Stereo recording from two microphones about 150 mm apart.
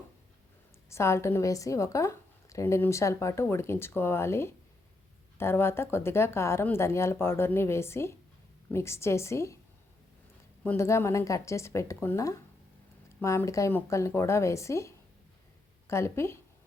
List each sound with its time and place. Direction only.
0.9 s a woman's voice: 20° left (ahead or behind)
10.6 s a woman's voice: 15° left (ahead or behind)